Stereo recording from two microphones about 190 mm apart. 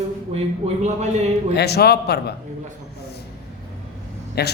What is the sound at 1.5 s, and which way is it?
Speech, 60° left (ahead or behind).